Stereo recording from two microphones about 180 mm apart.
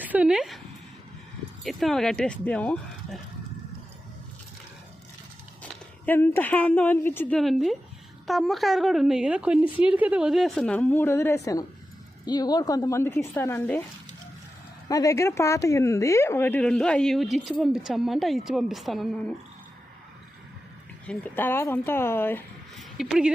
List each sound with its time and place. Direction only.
0.0 s speech: 10° right (ahead or behind)
1.6 s speech: centre (ahead or behind)
6.1 s speech: 10° left (ahead or behind)
7.3 s speech: centre (ahead or behind)
14.8 s speech: 20° left (ahead or behind); by 19.2 s centre (ahead or behind)
21.1 s speech: 10° left (ahead or behind)
22.8 s speech: centre (ahead or behind)